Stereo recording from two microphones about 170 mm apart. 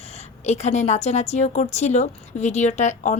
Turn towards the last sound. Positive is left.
turn(degrees=45)  # may be behind; listen again after turning